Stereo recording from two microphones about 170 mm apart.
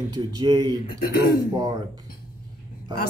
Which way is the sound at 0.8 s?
60° left (ahead or behind).